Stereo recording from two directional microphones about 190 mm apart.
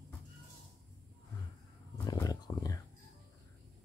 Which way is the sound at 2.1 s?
20° left (ahead or behind).